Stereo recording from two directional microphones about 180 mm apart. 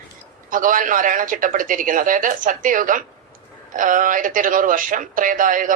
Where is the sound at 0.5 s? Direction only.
50° right (ahead or behind).